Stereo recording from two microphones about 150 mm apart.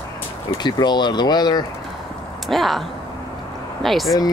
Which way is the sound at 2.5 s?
Centre (ahead or behind).